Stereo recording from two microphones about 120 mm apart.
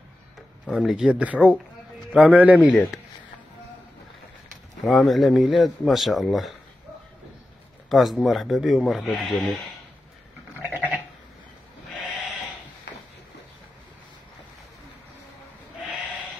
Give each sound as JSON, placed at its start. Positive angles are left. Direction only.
{"t": 0.7, "sound": "speech", "side_deg": -5}
{"t": 4.8, "sound": "speech", "side_deg": 0}
{"t": 7.9, "sound": "speech", "side_deg": 0}
{"t": 10.7, "sound": "sheep", "side_deg": -15}